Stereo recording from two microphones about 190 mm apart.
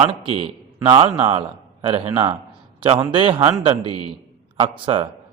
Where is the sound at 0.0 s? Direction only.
30° right (ahead or behind).